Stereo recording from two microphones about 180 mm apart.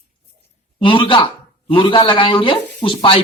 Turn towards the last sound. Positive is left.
turn(degrees=30)  # may be behind; listen again after turning